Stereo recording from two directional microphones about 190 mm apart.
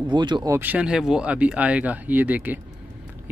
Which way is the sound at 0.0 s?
25° right (ahead or behind).